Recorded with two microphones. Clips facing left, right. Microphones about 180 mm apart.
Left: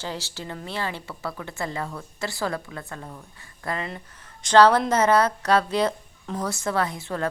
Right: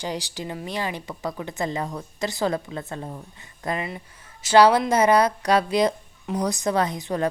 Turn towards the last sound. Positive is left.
turn(degrees=-15)  # may be behind; listen again after turning